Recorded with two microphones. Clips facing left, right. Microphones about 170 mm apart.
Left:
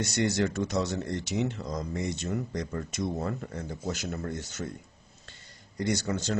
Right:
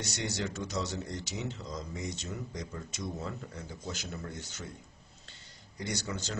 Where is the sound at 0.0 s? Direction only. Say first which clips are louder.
Left 9 dB; 60° left (ahead or behind).